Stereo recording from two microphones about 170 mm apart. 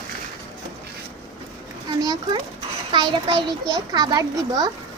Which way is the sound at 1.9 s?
25° right (ahead or behind).